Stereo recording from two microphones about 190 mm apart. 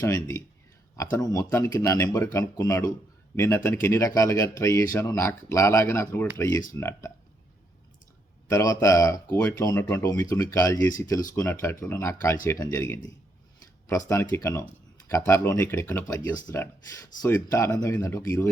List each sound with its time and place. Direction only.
0.0 s speech: 15° left (ahead or behind)
8.4 s speech: 15° left (ahead or behind)
14.1 s speech: 15° left (ahead or behind)